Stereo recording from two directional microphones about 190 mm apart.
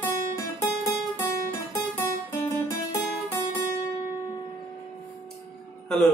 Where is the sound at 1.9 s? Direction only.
10° left (ahead or behind).